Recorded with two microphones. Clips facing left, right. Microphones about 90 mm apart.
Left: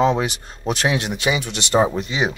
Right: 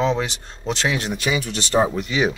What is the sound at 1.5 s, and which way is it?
Speech, 70° left (ahead or behind).